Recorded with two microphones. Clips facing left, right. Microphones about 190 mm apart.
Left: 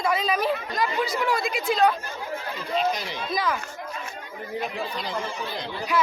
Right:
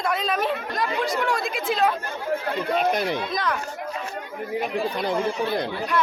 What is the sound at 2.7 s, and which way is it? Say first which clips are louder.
Speech: right 3 dB; 55° right (ahead or behind).